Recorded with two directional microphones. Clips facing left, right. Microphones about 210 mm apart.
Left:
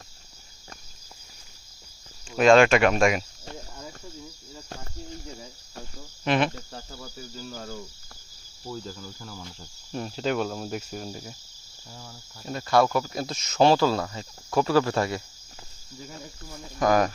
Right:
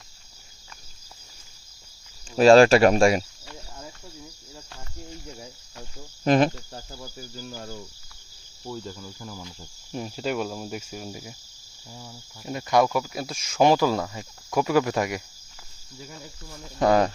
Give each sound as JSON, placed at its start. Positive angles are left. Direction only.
{"t": 2.3, "sound": "speech", "side_deg": -35}
{"t": 6.2, "sound": "speech", "side_deg": -40}
{"t": 9.2, "sound": "speech", "side_deg": -10}
{"t": 16.8, "sound": "speech", "side_deg": -25}